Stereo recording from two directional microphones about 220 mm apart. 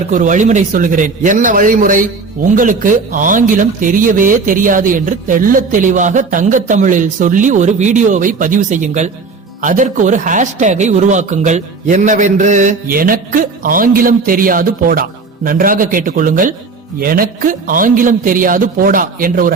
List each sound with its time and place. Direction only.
0.1 s speech: 35° right (ahead or behind)